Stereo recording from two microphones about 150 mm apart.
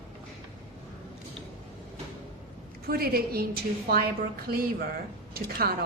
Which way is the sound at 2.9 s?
90° right.